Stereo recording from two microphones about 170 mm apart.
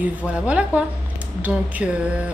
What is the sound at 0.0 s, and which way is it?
Speech, 5° right (ahead or behind).